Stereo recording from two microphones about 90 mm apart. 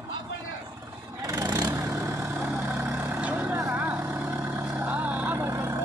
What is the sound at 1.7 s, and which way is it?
Vehicle, 35° right (ahead or behind).